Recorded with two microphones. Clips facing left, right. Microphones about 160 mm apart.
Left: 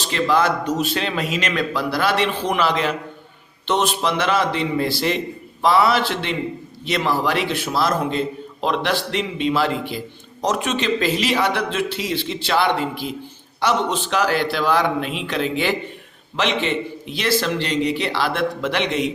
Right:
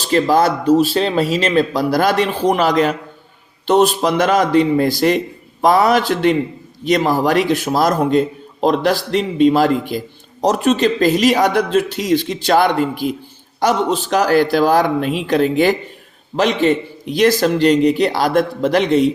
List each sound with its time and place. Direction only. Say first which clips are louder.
0.0 s speech: right 5 dB; 40° right (ahead or behind)